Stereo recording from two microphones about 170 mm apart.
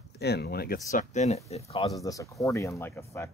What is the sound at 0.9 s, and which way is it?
Speech, 45° left (ahead or behind).